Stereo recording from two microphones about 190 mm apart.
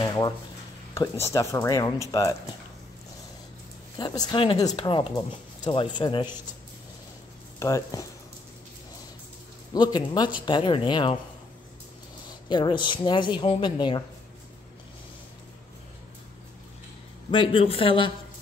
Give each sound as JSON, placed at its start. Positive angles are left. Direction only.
{"t": 0.0, "sound": "a sound", "side_deg": 20}
{"t": 1.3, "sound": "speech", "side_deg": 15}
{"t": 4.0, "sound": "speech", "side_deg": 20}
{"t": 7.5, "sound": "speech", "side_deg": 15}
{"t": 9.8, "sound": "speech", "side_deg": 25}
{"t": 12.4, "sound": "speech", "side_deg": 25}
{"t": 17.3, "sound": "speech", "side_deg": 25}